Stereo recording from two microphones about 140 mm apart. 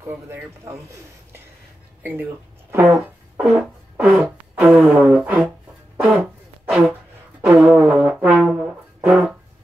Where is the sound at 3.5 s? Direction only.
5° right (ahead or behind).